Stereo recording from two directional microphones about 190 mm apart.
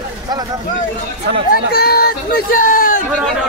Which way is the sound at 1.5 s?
55° left (ahead or behind).